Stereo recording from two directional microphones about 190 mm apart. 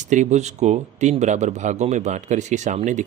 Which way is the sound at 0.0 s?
40° right (ahead or behind).